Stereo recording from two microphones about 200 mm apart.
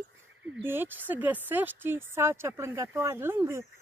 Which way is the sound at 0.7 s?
10° right (ahead or behind).